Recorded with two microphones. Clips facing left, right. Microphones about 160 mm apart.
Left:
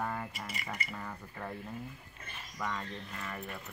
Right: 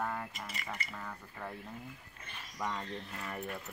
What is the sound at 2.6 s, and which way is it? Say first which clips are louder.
Speech: even; 20° right (ahead or behind).